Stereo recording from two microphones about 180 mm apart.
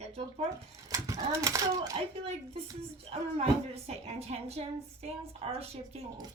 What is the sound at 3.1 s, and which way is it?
A woman's voice, 35° right (ahead or behind).